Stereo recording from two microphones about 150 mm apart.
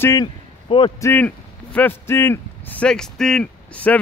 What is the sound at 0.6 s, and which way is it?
Speech, 35° left (ahead or behind).